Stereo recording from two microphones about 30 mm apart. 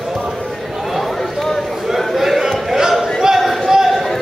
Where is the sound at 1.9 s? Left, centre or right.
Centre.